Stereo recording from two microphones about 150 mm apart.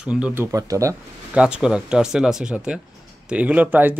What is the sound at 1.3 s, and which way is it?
Speech, 5° right (ahead or behind).